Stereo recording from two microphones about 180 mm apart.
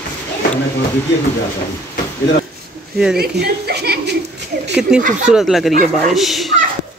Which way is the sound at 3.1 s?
60° right (ahead or behind).